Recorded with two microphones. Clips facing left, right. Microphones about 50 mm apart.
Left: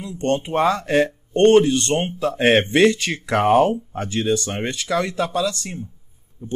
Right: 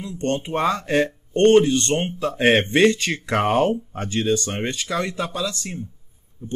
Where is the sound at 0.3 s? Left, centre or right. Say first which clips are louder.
Left 3 dB; centre.